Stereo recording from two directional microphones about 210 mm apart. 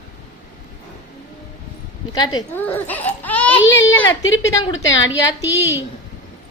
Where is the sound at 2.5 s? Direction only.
10° left (ahead or behind).